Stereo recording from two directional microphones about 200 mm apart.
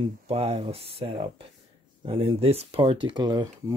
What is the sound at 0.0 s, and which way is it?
Speech, 30° right (ahead or behind).